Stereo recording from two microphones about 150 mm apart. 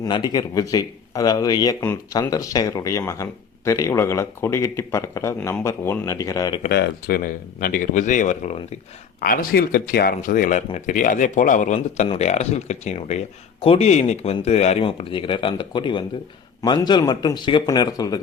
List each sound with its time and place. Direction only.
0.0 s speech: 30° left (ahead or behind)
6.7 s speech: 90° left; by 8.5 s 50° left (ahead or behind)
9.2 s speech: 70° left (ahead or behind); by 12.0 s 55° left (ahead or behind)
12.0 s speech: 45° left (ahead or behind); by 18.2 s 25° left (ahead or behind)